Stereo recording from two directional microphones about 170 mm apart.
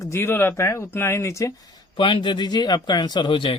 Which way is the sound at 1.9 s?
30° left (ahead or behind).